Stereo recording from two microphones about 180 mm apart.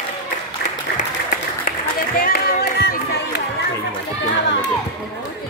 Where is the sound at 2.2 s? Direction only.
55° left (ahead or behind).